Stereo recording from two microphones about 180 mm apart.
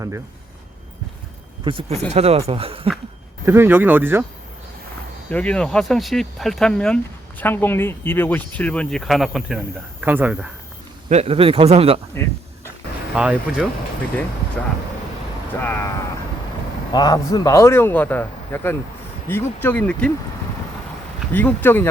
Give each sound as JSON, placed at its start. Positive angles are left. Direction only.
{"t": 1.6, "sound": "speech", "side_deg": -30}
{"t": 3.4, "sound": "speech", "side_deg": -15}
{"t": 5.3, "sound": "speech", "side_deg": 5}
{"t": 11.1, "sound": "speech", "side_deg": -35}
{"t": 12.2, "sound": "speech", "side_deg": 10}
{"t": 13.1, "sound": "speech", "side_deg": -5}
{"t": 14.6, "sound": "speech", "side_deg": 5}
{"t": 16.9, "sound": "speech", "side_deg": 20}
{"t": 21.3, "sound": "speech", "side_deg": 10}